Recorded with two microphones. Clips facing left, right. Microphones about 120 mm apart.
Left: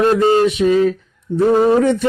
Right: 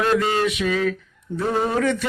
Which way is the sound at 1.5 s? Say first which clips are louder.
Left 8 dB; 30° left (ahead or behind).